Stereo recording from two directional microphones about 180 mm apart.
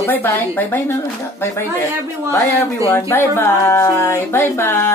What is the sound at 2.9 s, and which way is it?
Speech, 15° left (ahead or behind).